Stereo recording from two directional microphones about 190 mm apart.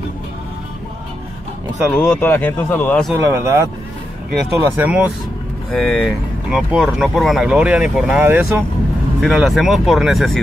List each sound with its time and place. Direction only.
2.0 s speech: 5° left (ahead or behind)
3.2 s speech: 15° right (ahead or behind)
5.7 s speech: 5° left (ahead or behind)